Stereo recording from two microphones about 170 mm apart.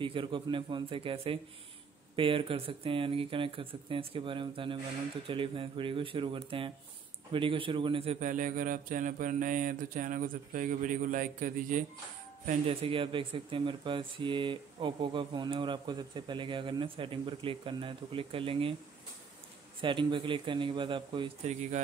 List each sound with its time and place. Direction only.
0.0 s a man's voice: 30° right (ahead or behind); by 11.8 s 50° right (ahead or behind)
12.4 s speech: 35° right (ahead or behind)
19.8 s speech: 30° right (ahead or behind)
21.5 s a man's voice: 45° right (ahead or behind)